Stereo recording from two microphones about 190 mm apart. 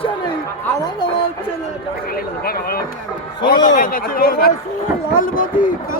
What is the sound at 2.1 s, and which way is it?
A man's voice, 50° left (ahead or behind).